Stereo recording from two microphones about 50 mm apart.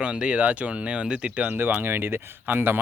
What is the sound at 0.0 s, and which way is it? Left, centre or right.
Speech, right.